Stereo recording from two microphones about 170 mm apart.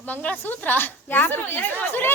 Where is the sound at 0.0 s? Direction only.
10° left (ahead or behind).